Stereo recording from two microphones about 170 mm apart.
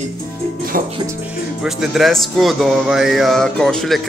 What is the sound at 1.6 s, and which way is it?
Speech, centre (ahead or behind).